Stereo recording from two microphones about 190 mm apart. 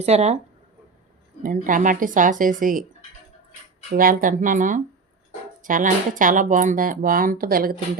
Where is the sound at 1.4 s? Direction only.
45° right (ahead or behind).